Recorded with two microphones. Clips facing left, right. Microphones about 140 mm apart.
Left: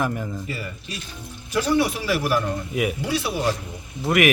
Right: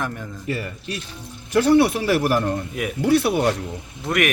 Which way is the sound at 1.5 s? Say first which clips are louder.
Right 5 dB; 60° right (ahead or behind).